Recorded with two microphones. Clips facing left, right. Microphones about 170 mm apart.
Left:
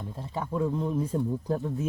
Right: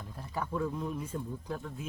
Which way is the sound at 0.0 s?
25° left (ahead or behind).